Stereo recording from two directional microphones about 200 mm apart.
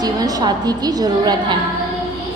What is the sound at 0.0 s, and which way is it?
A woman's voice, 20° right (ahead or behind).